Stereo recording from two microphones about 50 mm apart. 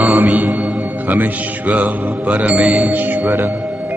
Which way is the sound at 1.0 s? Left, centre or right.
Right.